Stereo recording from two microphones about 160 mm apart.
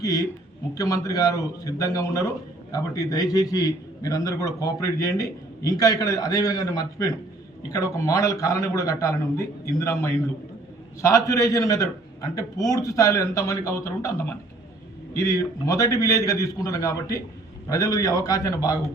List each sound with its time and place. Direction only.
0.7 s a man's voice: 20° left (ahead or behind)